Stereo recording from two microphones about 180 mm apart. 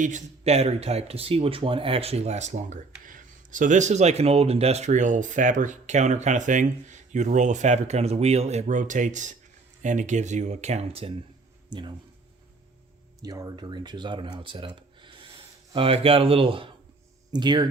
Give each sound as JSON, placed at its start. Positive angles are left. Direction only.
{"t": 0.0, "sound": "speech", "side_deg": -40}
{"t": 13.2, "sound": "speech", "side_deg": -20}